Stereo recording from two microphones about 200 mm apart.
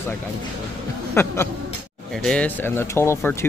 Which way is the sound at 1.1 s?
10° left (ahead or behind).